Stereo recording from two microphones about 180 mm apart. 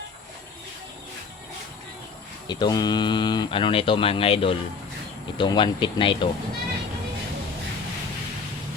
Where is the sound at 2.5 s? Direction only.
25° left (ahead or behind).